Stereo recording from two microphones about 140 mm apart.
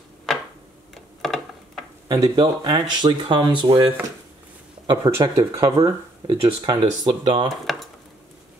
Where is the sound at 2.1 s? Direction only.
30° right (ahead or behind).